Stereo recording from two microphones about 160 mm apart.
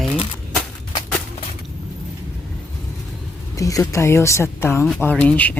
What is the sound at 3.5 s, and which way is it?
Speech, 20° left (ahead or behind).